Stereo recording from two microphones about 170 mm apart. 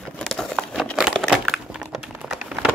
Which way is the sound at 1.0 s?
5° right (ahead or behind).